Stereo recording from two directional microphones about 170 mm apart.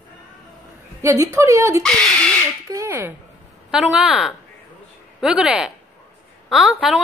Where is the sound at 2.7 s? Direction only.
15° right (ahead or behind).